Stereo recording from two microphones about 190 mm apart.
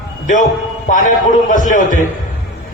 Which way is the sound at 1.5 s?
45° left (ahead or behind).